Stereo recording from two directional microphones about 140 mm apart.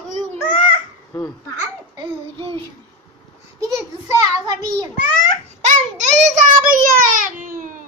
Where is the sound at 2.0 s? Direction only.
40° right (ahead or behind).